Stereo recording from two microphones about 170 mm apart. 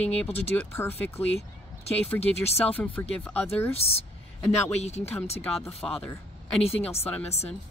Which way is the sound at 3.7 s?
35° left (ahead or behind).